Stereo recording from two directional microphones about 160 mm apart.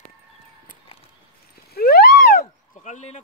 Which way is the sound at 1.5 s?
70° left (ahead or behind).